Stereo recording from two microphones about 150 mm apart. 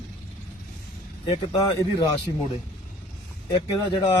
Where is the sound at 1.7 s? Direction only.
25° left (ahead or behind).